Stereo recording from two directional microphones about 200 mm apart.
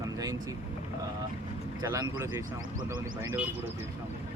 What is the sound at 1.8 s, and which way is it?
Speech, 15° right (ahead or behind).